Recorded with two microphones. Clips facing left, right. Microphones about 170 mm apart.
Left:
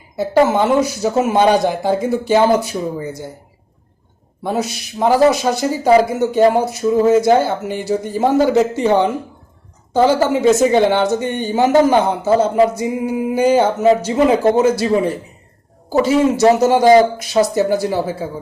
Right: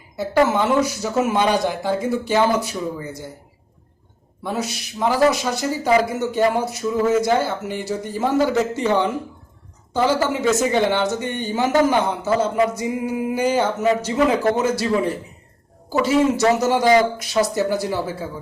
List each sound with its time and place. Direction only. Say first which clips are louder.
0.2 s speech: left 4 dB; 30° left (ahead or behind)
1.3 s a man's voice: left 8 dB; 40° left (ahead or behind)
4.4 s a man's voice: left 5 dB; 35° left (ahead or behind)
12.8 s speech: left 4 dB; 20° left (ahead or behind)
13.6 s speech: left 6 dB; 30° left (ahead or behind)
16.7 s a man's voice: left 6 dB; 35° left (ahead or behind)
17.2 s speech: left 5 dB; 25° left (ahead or behind)